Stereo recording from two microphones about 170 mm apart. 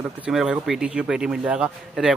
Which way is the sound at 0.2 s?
5° right (ahead or behind).